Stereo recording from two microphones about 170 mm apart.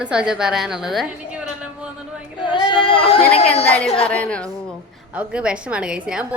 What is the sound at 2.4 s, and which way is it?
Female singing, 30° left (ahead or behind).